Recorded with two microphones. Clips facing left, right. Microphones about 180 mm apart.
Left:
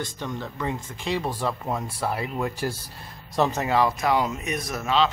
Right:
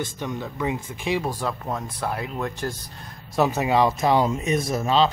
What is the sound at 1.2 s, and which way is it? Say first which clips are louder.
Speech: even; centre (ahead or behind).